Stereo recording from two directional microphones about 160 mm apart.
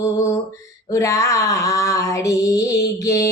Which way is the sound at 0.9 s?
20° left (ahead or behind).